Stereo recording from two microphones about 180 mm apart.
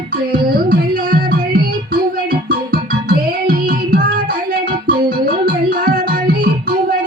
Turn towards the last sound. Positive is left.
turn(degrees=-55)  # may be behind; listen again after turning